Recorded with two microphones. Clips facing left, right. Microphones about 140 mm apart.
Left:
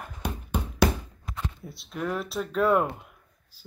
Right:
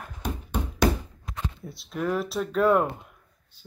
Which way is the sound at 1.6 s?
Centre (ahead or behind).